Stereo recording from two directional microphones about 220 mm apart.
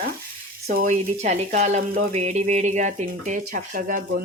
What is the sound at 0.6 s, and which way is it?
Speech, 40° right (ahead or behind).